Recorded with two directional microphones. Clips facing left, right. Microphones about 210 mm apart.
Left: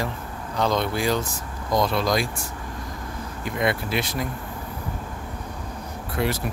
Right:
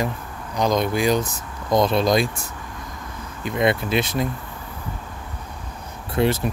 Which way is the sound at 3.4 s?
20° right (ahead or behind).